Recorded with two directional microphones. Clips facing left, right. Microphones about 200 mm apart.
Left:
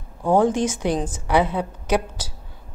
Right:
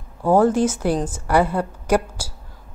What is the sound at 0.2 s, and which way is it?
Speech, 5° right (ahead or behind).